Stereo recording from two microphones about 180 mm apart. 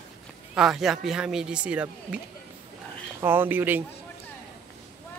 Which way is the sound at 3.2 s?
10° right (ahead or behind).